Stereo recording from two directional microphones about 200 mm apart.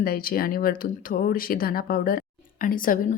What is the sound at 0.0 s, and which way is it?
A woman's voice, 50° left (ahead or behind).